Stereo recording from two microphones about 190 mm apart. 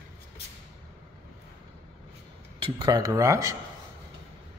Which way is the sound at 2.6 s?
20° right (ahead or behind).